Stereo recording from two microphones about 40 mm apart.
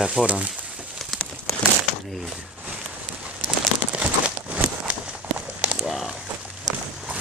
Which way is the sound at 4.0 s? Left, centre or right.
Right.